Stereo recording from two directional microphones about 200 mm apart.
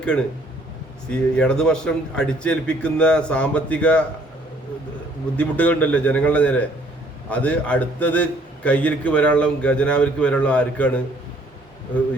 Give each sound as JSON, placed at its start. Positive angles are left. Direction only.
{"t": 0.0, "sound": "a man's voice", "side_deg": 5}
{"t": 5.4, "sound": "a man's voice", "side_deg": 5}